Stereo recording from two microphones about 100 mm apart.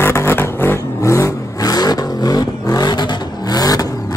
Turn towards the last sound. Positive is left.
turn(degrees=40)  # may be behind; listen again after turning